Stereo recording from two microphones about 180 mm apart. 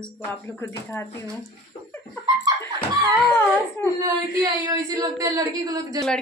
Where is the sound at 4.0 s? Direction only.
20° right (ahead or behind).